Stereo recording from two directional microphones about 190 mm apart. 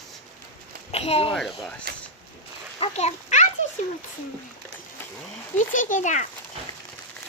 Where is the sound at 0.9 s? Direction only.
30° left (ahead or behind).